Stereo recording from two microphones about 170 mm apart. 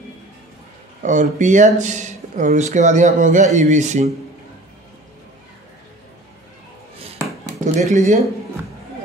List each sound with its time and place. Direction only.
1.0 s speech: 45° right (ahead or behind)
7.4 s speech: 45° right (ahead or behind)